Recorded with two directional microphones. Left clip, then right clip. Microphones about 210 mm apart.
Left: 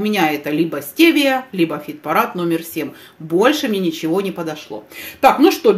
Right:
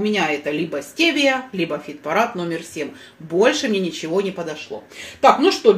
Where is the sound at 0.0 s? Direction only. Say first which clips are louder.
Left 3 dB; 30° left (ahead or behind).